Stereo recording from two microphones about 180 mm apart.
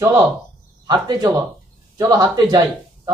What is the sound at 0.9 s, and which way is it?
Speech, 20° right (ahead or behind).